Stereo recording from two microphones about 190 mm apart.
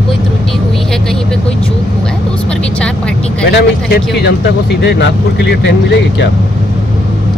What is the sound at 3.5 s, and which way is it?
Speech, 60° left (ahead or behind).